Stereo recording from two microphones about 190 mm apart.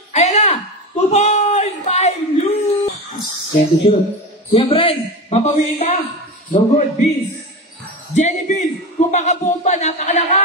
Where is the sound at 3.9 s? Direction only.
30° left (ahead or behind).